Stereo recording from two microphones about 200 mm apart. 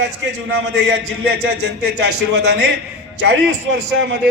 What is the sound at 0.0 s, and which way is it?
A man's voice, 60° right (ahead or behind).